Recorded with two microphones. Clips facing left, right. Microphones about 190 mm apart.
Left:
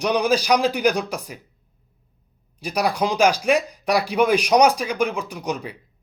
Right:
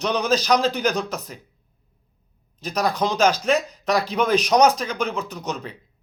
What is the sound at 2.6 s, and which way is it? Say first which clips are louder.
Speech: left 1 dB; 10° left (ahead or behind).